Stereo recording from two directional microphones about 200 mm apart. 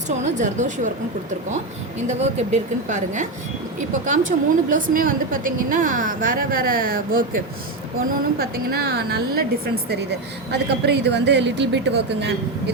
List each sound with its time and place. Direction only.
0.1 s a woman's voice: 35° right (ahead or behind)
2.0 s a woman's voice: 35° right (ahead or behind); by 12.7 s 55° right (ahead or behind)